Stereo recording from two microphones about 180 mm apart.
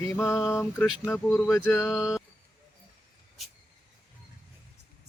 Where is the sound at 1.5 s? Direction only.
15° left (ahead or behind).